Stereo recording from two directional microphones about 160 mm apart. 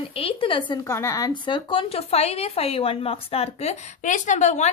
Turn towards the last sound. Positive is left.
turn(degrees=45)  # may be behind; listen again after turning